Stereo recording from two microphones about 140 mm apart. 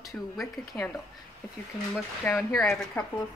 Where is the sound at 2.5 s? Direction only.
5° left (ahead or behind).